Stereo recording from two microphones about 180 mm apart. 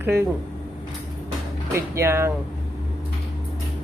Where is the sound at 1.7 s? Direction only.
15° right (ahead or behind).